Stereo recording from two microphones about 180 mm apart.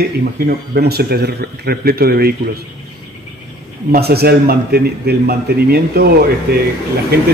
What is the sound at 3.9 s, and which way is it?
Speech, 60° right (ahead or behind).